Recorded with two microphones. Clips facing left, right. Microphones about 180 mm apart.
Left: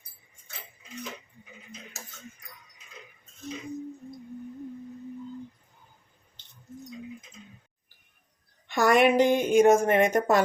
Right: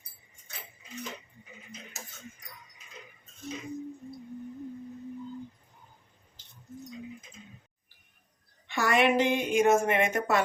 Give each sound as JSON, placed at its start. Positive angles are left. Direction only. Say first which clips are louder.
{"t": 8.6, "sound": "a woman's voice", "louder": "left 4 dB", "side_deg": 45}